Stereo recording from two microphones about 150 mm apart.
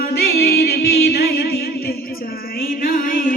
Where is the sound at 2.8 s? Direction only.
75° left (ahead or behind).